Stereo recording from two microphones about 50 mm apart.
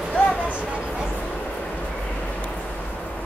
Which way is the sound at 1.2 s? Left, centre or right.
Left.